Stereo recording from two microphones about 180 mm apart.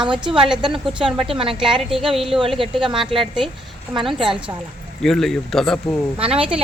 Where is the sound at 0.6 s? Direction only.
30° right (ahead or behind).